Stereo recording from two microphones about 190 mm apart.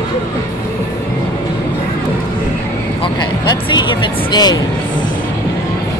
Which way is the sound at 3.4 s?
25° left (ahead or behind).